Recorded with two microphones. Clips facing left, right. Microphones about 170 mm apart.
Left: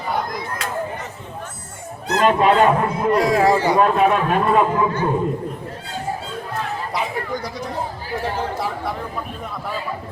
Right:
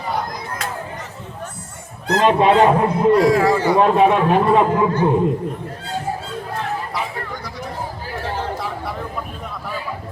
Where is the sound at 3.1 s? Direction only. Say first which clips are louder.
Left 2 dB; 20° left (ahead or behind).